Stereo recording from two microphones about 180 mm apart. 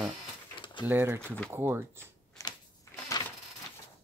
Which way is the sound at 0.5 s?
25° left (ahead or behind).